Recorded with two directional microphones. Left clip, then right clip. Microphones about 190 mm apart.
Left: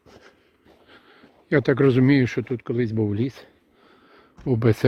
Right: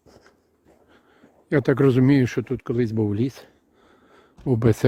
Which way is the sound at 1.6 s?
20° right (ahead or behind).